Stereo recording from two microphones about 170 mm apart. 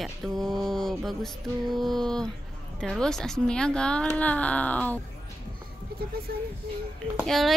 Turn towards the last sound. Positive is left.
turn(degrees=0)  # may be behind; listen again after turning